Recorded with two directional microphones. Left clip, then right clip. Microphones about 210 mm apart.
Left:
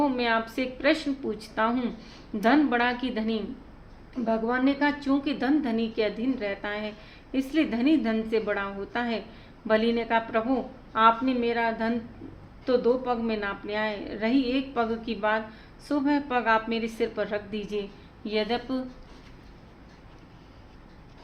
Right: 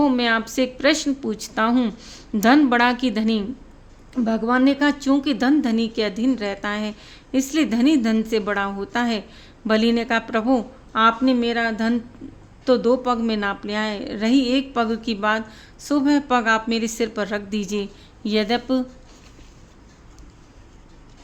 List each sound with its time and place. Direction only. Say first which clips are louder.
0.0 s a woman's voice: right 6 dB; 60° right (ahead or behind)